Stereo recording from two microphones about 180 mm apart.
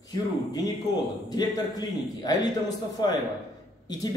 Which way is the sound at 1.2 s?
20° left (ahead or behind).